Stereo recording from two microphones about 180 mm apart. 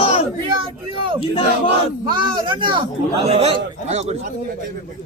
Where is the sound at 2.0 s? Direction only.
25° right (ahead or behind).